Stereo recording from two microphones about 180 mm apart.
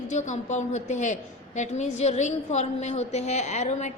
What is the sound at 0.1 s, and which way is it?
A woman's voice, 40° left (ahead or behind).